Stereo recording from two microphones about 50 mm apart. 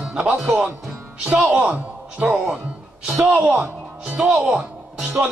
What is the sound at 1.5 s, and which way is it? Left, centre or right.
Speech, right.